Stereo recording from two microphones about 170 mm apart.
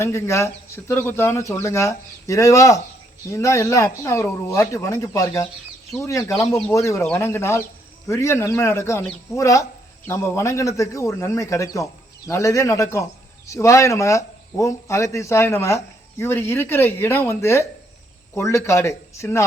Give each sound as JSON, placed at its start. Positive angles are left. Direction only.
{"t": 0.0, "sound": "speech", "side_deg": 15}